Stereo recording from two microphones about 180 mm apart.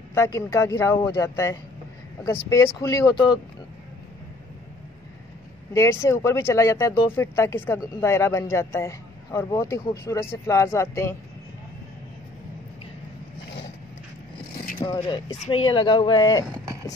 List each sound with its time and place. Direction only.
0.1 s speech: 15° left (ahead or behind)
5.7 s speech: 15° left (ahead or behind)
14.9 s speech: 25° left (ahead or behind)